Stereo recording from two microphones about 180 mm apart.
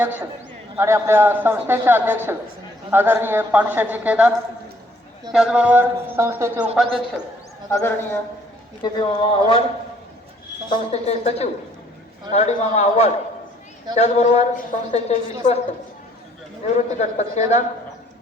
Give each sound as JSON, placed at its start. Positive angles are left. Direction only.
{"t": 0.0, "sound": "a man's voice", "side_deg": -10}
{"t": 5.3, "sound": "a man's voice", "side_deg": -5}
{"t": 7.7, "sound": "a man's voice", "side_deg": 10}
{"t": 8.8, "sound": "speech", "side_deg": 25}
{"t": 10.7, "sound": "a woman's voice", "side_deg": 35}
{"t": 16.6, "sound": "a woman's voice", "side_deg": 40}